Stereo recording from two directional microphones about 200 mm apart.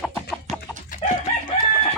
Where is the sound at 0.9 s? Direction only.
40° left (ahead or behind).